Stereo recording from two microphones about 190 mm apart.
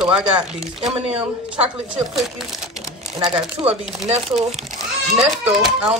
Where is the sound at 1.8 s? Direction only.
Centre (ahead or behind).